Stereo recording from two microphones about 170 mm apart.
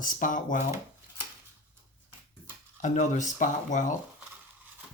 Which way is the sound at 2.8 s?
45° left (ahead or behind).